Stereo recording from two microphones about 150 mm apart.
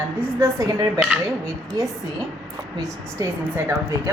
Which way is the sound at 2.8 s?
20° right (ahead or behind).